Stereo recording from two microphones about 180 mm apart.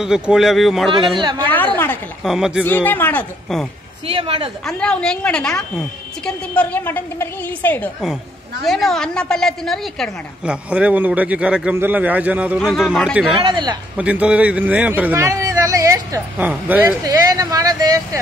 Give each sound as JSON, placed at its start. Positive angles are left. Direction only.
{"t": 0.0, "sound": "a woman's voice", "side_deg": -5}
{"t": 1.5, "sound": "a woman's voice", "side_deg": 10}
{"t": 2.2, "sound": "a woman's voice", "side_deg": 0}
{"t": 2.6, "sound": "speech", "side_deg": 10}
{"t": 4.1, "sound": "speech", "side_deg": -30}
{"t": 4.6, "sound": "a woman's voice", "side_deg": 5}
{"t": 13.3, "sound": "speech", "side_deg": -30}
{"t": 13.9, "sound": "a man's voice", "side_deg": -5}